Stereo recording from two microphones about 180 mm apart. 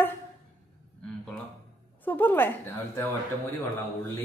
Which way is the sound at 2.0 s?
10° left (ahead or behind).